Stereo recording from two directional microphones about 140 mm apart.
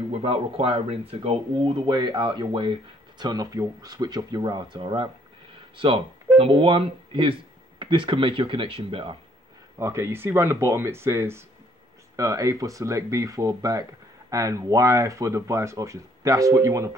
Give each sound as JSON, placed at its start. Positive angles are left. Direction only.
{"t": 0.1, "sound": "speech", "side_deg": -45}
{"t": 6.3, "sound": "speech", "side_deg": -40}
{"t": 9.8, "sound": "speech", "side_deg": -20}